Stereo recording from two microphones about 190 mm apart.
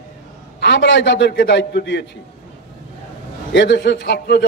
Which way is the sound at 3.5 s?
65° left (ahead or behind).